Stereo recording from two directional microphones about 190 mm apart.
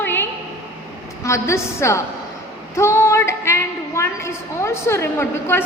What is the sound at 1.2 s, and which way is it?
A woman's voice, 15° left (ahead or behind).